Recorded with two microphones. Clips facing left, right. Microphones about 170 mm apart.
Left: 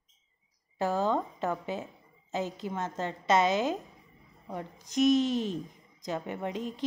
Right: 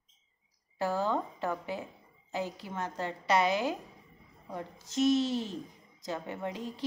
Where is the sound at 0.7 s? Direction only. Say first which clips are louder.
Left 2 dB; 20° left (ahead or behind).